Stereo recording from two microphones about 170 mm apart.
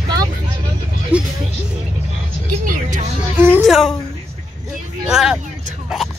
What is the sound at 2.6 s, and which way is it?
Music, 50° right (ahead or behind).